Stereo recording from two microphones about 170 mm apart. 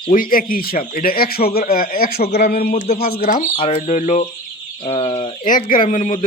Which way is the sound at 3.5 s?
35° left (ahead or behind).